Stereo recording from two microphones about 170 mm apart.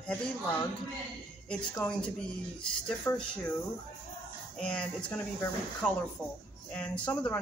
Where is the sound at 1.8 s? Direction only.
5° left (ahead or behind).